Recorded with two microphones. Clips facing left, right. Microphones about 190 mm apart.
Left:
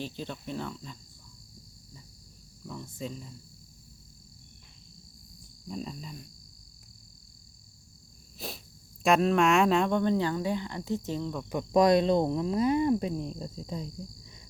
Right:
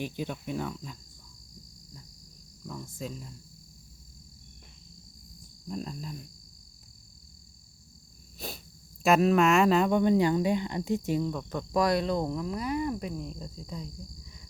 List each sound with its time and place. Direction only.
0.0 s speech: 10° right (ahead or behind)
2.8 s cricket: centre (ahead or behind)
5.6 s cricket: centre (ahead or behind)
8.4 s cricket: centre (ahead or behind)
9.0 s speech: 5° right (ahead or behind)
11.4 s speech: 15° left (ahead or behind)